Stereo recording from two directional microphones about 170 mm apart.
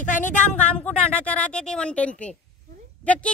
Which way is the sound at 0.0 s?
50° left (ahead or behind).